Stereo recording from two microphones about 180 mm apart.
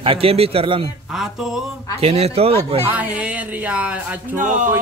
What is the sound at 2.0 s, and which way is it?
Speech, 35° right (ahead or behind).